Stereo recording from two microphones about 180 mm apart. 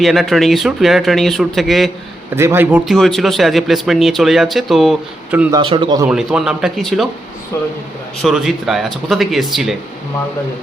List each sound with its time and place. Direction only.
0.0 s speech: centre (ahead or behind)
2.3 s a man's voice: 15° right (ahead or behind)
2.8 s speech: centre (ahead or behind)
5.5 s a man's voice: 25° right (ahead or behind)
6.1 s speech: 5° right (ahead or behind)
8.2 s speech: centre (ahead or behind)